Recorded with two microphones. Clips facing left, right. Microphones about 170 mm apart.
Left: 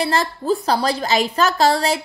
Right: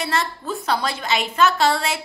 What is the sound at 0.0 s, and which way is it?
A woman's voice, 35° left (ahead or behind).